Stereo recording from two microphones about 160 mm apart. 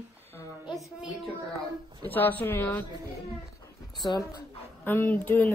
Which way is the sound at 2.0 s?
10° left (ahead or behind).